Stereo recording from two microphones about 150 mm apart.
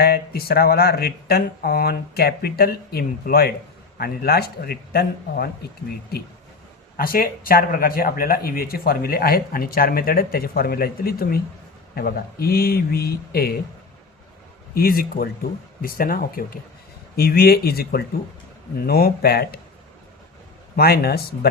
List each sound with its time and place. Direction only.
0.0 s speech: 90° left
6.9 s speech: 75° left (ahead or behind); by 13.5 s 90° left
14.8 s speech: 80° left
17.2 s speech: 90° left
20.7 s speech: 90° left